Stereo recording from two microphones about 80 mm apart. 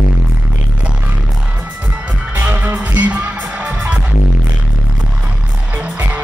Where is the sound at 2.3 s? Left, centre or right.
Right.